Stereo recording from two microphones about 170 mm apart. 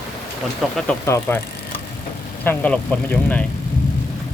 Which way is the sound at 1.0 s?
15° left (ahead or behind).